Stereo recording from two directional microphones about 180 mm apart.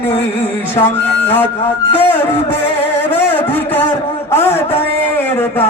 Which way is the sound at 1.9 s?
10° left (ahead or behind).